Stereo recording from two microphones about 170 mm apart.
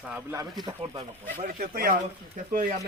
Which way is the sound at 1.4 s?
50° right (ahead or behind).